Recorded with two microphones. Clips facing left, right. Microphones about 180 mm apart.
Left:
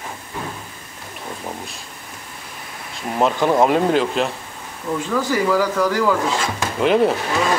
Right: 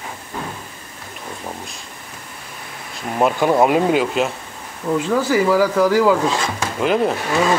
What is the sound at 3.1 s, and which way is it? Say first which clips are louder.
Speech: right 1 dB; 5° right (ahead or behind).